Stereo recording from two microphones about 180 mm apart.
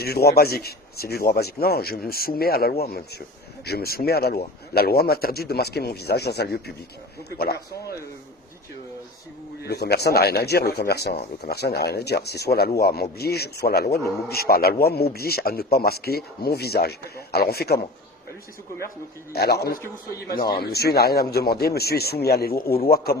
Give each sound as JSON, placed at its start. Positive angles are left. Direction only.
{"t": 0.0, "sound": "speech", "side_deg": 60}
{"t": 9.6, "sound": "speech", "side_deg": 65}
{"t": 19.3, "sound": "speech", "side_deg": 60}